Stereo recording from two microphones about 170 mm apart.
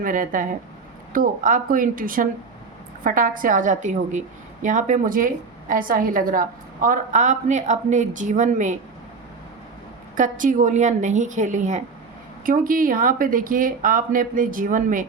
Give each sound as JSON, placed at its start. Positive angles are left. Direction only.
{"t": 0.0, "sound": "a woman's voice", "side_deg": -50}
{"t": 10.2, "sound": "a woman's voice", "side_deg": -50}